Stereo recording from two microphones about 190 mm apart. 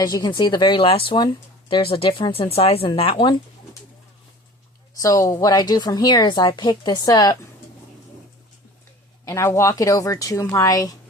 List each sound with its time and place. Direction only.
0.0 s speech: 20° left (ahead or behind)
4.9 s speech: 15° left (ahead or behind)
9.2 s speech: 15° left (ahead or behind)